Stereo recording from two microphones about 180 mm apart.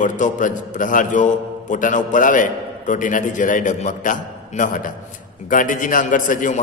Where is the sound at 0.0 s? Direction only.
45° left (ahead or behind).